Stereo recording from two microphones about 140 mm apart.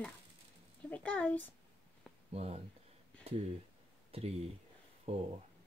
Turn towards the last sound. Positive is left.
turn(degrees=-45)  # may be behind; listen again after turning